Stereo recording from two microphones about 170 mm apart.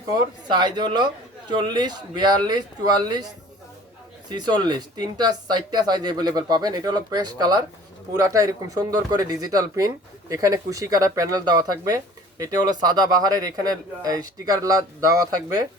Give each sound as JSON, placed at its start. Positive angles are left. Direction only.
{"t": 0.1, "sound": "speech", "side_deg": -25}
{"t": 4.3, "sound": "speech", "side_deg": -25}